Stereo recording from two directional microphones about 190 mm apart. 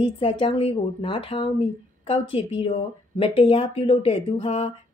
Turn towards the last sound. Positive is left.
turn(degrees=30)  # may be behind; listen again after turning